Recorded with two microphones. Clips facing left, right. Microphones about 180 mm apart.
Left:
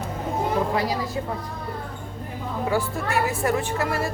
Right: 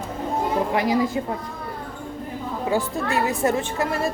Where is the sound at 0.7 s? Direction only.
20° right (ahead or behind).